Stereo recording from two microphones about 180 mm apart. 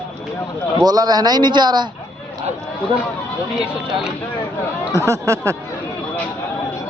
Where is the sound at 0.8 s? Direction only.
20° right (ahead or behind).